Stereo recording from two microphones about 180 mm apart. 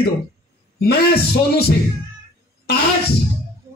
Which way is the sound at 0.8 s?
60° left (ahead or behind).